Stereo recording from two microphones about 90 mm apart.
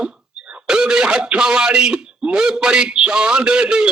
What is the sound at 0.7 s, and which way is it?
Speech, 10° right (ahead or behind).